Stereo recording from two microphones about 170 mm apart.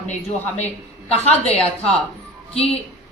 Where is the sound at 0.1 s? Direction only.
40° left (ahead or behind).